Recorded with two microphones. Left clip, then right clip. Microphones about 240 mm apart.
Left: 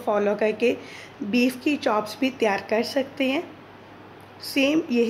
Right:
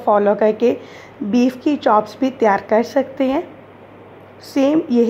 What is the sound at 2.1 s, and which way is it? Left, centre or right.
Speech, right.